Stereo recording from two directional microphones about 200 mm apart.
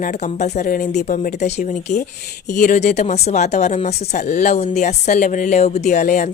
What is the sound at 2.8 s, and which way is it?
Speech, 35° left (ahead or behind).